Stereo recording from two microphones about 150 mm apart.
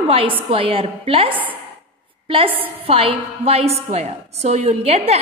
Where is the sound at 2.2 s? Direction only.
35° right (ahead or behind).